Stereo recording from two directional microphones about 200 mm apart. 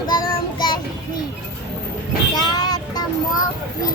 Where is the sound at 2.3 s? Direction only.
20° left (ahead or behind).